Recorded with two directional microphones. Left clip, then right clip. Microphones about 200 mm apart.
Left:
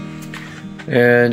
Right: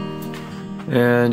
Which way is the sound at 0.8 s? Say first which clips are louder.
Left 4 dB; centre (ahead or behind).